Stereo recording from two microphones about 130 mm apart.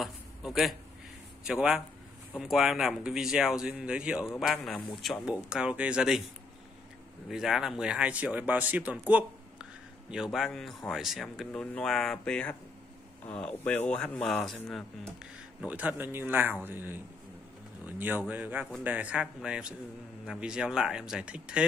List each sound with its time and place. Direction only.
0.0 s a sound: centre (ahead or behind)
1.5 s speech: 5° right (ahead or behind)
7.2 s a man's voice: centre (ahead or behind)
15.6 s speech: 10° right (ahead or behind)